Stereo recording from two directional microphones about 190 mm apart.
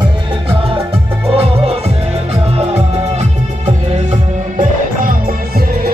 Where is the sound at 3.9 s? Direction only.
40° right (ahead or behind).